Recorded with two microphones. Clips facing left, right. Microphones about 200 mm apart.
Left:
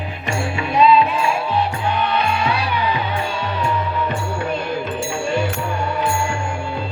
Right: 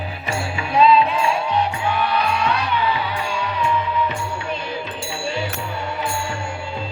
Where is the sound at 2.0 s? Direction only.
25° left (ahead or behind).